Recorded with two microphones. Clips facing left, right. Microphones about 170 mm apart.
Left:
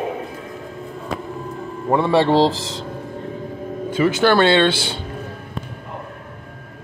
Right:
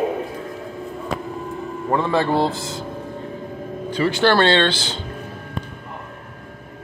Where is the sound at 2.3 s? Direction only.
90° left.